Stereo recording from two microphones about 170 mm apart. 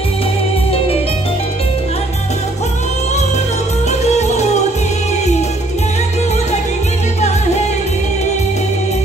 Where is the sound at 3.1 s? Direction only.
40° left (ahead or behind).